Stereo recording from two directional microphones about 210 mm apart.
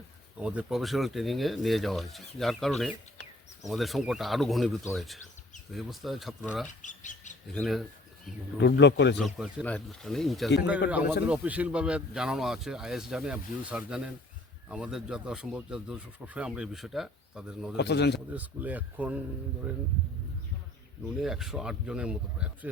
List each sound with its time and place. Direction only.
0.3 s speech: 5° right (ahead or behind)
6.8 s speech: 35° left (ahead or behind)
7.5 s speech: centre (ahead or behind)
8.5 s speech: 55° left (ahead or behind)
9.1 s speech: centre (ahead or behind)
17.7 s a man's voice: 55° left (ahead or behind)
18.3 s speech: 5° right (ahead or behind)
21.2 s speech: centre (ahead or behind)